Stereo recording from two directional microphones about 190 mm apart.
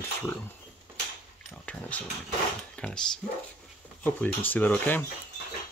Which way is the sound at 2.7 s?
5° left (ahead or behind).